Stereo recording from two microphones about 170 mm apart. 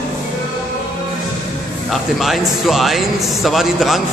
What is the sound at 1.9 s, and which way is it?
A man's voice, centre (ahead or behind).